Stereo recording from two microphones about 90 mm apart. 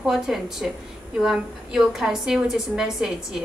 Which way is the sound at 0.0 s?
5° right (ahead or behind).